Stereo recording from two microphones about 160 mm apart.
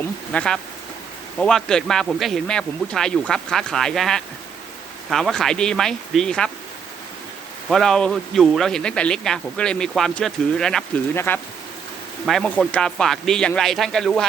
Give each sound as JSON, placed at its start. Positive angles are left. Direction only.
{"t": 0.3, "sound": "speech", "side_deg": 5}
{"t": 7.7, "sound": "speech", "side_deg": 5}
{"t": 11.1, "sound": "speech", "side_deg": 15}
{"t": 12.2, "sound": "speech", "side_deg": 0}